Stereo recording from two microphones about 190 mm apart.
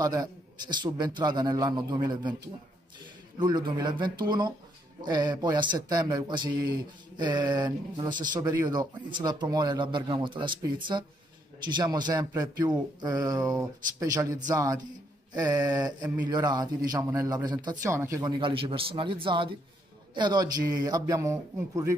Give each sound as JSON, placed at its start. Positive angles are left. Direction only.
{"t": 0.0, "sound": "speech", "side_deg": -20}
{"t": 18.4, "sound": "speech", "side_deg": -30}